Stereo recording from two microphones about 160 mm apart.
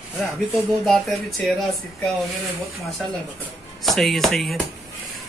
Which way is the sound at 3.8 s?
Centre (ahead or behind).